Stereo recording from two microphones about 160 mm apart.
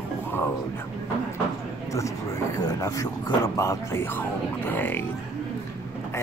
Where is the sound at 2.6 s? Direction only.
25° left (ahead or behind).